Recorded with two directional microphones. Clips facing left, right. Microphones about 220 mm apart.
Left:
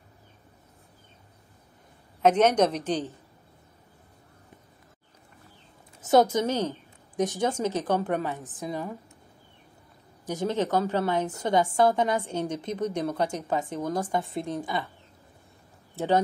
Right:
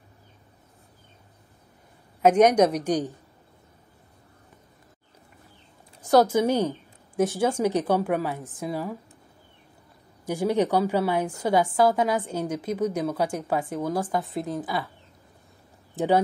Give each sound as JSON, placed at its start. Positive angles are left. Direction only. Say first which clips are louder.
{"t": 2.2, "sound": "a woman's voice", "louder": "right 3 dB", "side_deg": -10}
{"t": 5.9, "sound": "a sound", "louder": "right 1 dB", "side_deg": 0}
{"t": 6.3, "sound": "a woman's voice", "louder": "right 4 dB", "side_deg": -15}
{"t": 10.2, "sound": "a woman's voice", "louder": "right 4 dB", "side_deg": -10}
{"t": 16.0, "sound": "a woman's voice", "louder": "right 4 dB", "side_deg": -15}